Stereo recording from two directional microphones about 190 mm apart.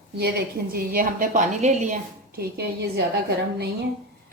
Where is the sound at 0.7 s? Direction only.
50° right (ahead or behind).